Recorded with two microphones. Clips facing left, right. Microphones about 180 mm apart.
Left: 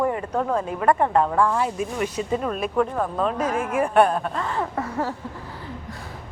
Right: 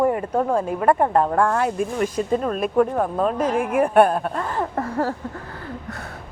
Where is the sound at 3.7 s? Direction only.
55° right (ahead or behind).